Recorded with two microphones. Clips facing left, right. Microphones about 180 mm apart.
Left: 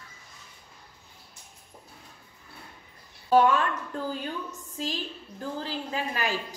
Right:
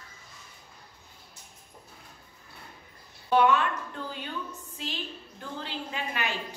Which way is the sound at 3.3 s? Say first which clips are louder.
Left 2 dB; 40° left (ahead or behind).